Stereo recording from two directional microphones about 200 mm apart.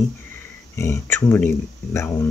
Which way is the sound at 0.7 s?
10° left (ahead or behind).